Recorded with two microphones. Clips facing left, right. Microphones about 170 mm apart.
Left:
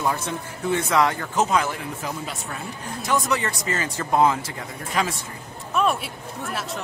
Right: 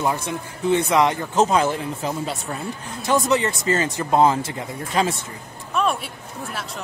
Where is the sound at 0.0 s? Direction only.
15° right (ahead or behind).